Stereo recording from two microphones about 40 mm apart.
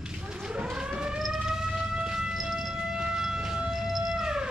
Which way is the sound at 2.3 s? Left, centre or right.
Centre.